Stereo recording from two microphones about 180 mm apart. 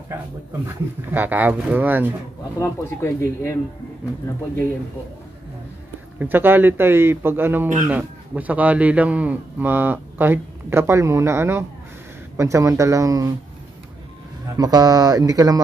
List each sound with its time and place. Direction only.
0.7 s a man's voice: 10° right (ahead or behind)
2.6 s speech: 15° left (ahead or behind)
6.1 s a man's voice: 10° right (ahead or behind)
14.6 s speech: 20° right (ahead or behind)